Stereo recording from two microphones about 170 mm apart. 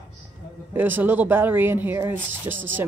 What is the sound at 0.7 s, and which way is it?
Speech, 10° right (ahead or behind).